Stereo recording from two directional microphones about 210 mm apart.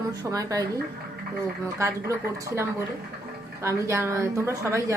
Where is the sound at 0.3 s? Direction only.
15° right (ahead or behind).